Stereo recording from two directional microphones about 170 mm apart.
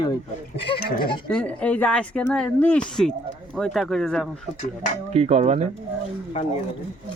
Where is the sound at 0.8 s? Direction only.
65° left (ahead or behind).